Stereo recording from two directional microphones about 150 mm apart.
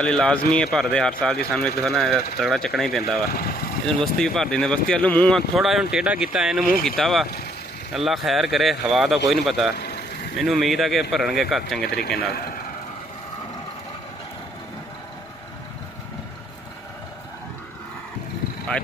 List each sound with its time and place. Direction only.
0.0 s speech: 5° left (ahead or behind)
3.3 s speech: 75° left (ahead or behind)
3.8 s speech: 5° left (ahead or behind)
5.6 s speech: centre (ahead or behind)
12.3 s a man's voice: 90° left